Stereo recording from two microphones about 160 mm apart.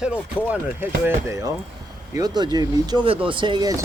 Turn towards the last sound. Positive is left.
turn(degrees=-25)  # may be behind; listen again after turning